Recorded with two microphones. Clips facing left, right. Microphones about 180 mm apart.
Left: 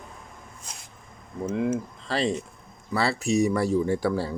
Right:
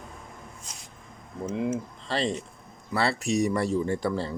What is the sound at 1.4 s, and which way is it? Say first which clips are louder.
Speech: left 3 dB; centre (ahead or behind).